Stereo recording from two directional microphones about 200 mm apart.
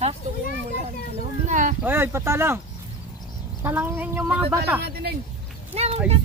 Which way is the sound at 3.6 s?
10° right (ahead or behind).